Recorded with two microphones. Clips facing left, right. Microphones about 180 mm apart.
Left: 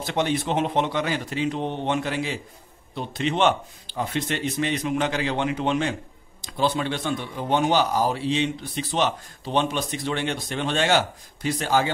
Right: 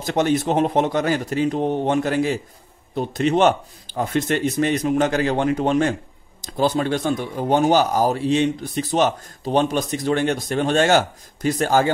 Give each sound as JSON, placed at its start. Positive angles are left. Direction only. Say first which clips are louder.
{"t": 0.0, "sound": "speech", "louder": "right 5 dB", "side_deg": -45}